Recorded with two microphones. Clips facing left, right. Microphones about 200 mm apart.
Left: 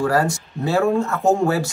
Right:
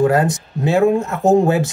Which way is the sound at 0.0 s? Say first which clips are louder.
Right 4 dB; 20° right (ahead or behind).